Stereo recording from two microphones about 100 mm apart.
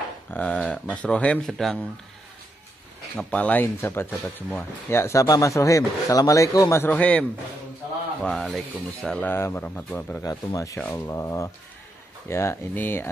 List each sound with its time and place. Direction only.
0.3 s speech: 10° left (ahead or behind)
3.2 s speech: 15° left (ahead or behind)
3.7 s speech: 25° left (ahead or behind)
6.8 s speech: 15° left (ahead or behind)
9.3 s a man's voice: 25° left (ahead or behind)
10.2 s a man's voice: 35° left (ahead or behind)